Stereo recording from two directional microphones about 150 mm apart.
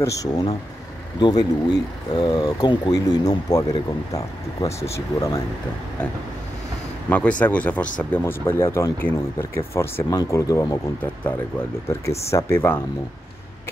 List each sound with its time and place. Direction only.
0.0 s speech: 20° left (ahead or behind)
7.1 s speech: 10° left (ahead or behind)
11.9 s speech: 15° left (ahead or behind)